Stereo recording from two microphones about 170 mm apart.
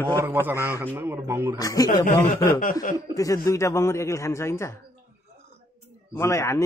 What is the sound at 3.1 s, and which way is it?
Speech, 20° left (ahead or behind).